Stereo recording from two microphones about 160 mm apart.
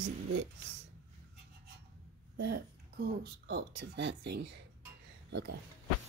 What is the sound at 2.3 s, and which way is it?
Speech, 90° right.